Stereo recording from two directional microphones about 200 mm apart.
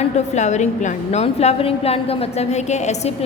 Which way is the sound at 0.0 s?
35° left (ahead or behind).